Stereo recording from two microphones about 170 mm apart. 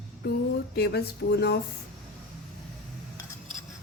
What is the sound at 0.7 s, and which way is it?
Speech, 75° left (ahead or behind).